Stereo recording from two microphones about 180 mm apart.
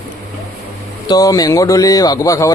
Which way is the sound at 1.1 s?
20° left (ahead or behind).